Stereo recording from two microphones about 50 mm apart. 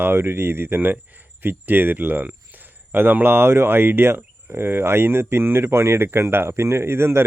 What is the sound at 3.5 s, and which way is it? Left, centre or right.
Speech, right.